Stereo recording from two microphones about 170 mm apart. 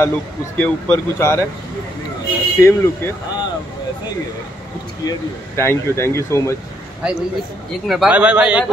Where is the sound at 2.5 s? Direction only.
15° left (ahead or behind).